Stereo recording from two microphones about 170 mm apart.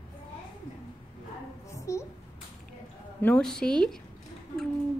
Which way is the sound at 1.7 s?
15° left (ahead or behind).